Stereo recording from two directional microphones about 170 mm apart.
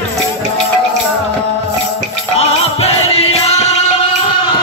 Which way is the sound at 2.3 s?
35° left (ahead or behind).